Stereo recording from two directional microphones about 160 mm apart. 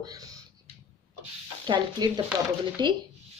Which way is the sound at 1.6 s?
25° right (ahead or behind).